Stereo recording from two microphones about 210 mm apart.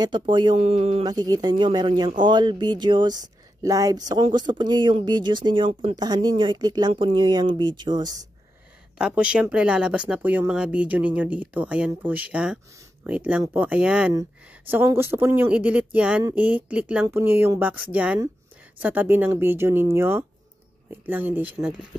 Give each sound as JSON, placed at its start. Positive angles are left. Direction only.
{"t": 0.0, "sound": "speech", "side_deg": -20}
{"t": 8.9, "sound": "speech", "side_deg": -5}
{"t": 13.4, "sound": "speech", "side_deg": -15}
{"t": 13.7, "sound": "speech", "side_deg": -5}